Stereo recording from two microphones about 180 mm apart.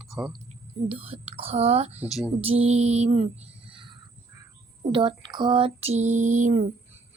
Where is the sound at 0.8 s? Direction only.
30° right (ahead or behind).